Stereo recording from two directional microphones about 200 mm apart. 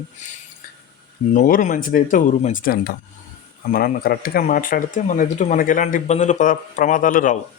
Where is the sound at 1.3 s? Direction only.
40° left (ahead or behind).